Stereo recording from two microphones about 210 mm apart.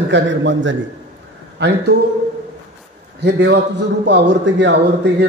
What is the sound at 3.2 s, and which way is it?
A man's voice, 55° right (ahead or behind).